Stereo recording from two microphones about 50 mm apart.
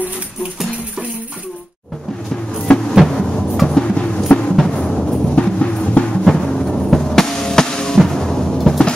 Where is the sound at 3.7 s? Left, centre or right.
Centre.